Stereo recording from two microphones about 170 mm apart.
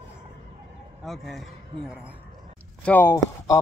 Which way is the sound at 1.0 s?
Centre (ahead or behind).